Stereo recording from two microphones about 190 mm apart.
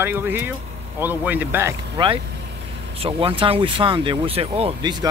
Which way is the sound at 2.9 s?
30° right (ahead or behind).